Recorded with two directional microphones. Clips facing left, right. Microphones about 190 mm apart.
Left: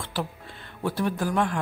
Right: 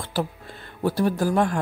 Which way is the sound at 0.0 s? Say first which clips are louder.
Right 4 dB; 40° right (ahead or behind).